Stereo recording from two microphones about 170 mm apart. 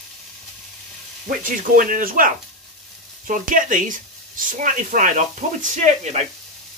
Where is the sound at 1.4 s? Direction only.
55° right (ahead or behind).